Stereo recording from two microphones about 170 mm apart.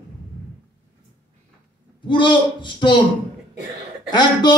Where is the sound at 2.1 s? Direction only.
30° left (ahead or behind).